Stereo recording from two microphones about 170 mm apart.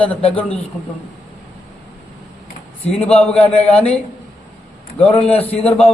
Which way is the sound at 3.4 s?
5° left (ahead or behind).